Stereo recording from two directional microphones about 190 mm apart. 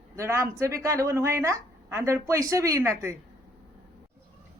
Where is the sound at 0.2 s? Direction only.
15° right (ahead or behind).